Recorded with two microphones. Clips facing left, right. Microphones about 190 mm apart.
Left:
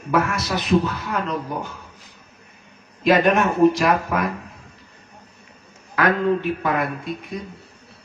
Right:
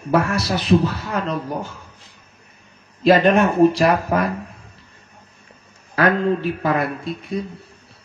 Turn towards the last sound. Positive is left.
turn(degrees=-30)  # may be behind; listen again after turning